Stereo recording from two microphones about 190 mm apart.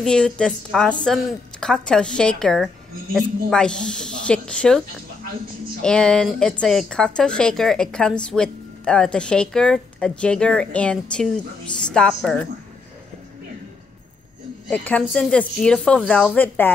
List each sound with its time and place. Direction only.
0.0 s speech: 5° left (ahead or behind)
14.7 s speech: 5° left (ahead or behind)